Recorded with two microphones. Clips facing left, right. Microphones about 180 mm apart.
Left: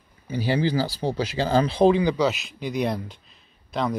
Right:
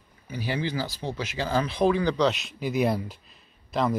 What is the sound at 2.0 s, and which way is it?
Speech, 10° left (ahead or behind).